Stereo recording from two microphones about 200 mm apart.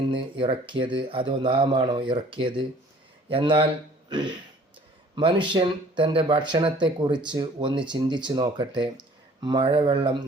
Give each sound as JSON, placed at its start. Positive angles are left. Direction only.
{"t": 0.1, "sound": "speech", "side_deg": -25}